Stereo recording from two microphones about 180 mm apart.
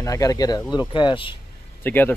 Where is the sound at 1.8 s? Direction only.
10° left (ahead or behind).